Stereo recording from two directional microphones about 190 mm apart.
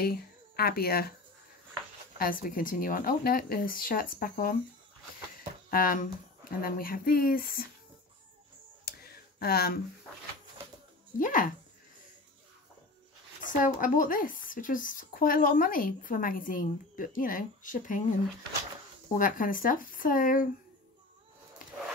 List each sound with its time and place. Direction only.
0.0 s speech: 55° left (ahead or behind)
2.1 s speech: 50° left (ahead or behind)
5.7 s speech: 50° left (ahead or behind)
9.4 s speech: 55° left (ahead or behind)
11.1 s speech: 45° left (ahead or behind)
13.4 s speech: 45° left (ahead or behind)
19.1 s speech: 45° left (ahead or behind)